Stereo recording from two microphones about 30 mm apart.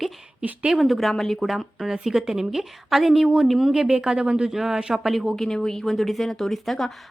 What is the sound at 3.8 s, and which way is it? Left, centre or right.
Speech, right.